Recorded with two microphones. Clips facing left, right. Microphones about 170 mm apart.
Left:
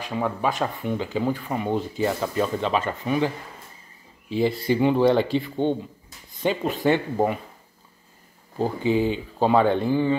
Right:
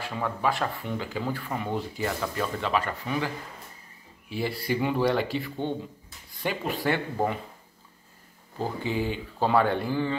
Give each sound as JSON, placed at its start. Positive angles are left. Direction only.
{"t": 0.0, "sound": "speech", "side_deg": 20}
{"t": 4.3, "sound": "speech", "side_deg": 20}
{"t": 8.5, "sound": "speech", "side_deg": 20}